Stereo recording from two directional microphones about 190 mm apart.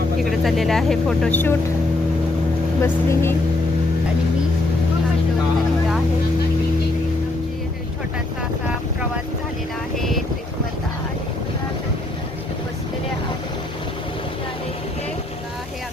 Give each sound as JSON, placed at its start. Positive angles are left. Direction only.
{"t": 0.2, "sound": "speech", "side_deg": 0}
{"t": 2.8, "sound": "speech", "side_deg": 15}